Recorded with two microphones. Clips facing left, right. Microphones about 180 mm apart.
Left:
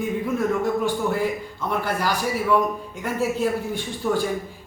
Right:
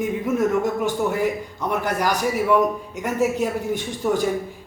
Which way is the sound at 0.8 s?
20° right (ahead or behind).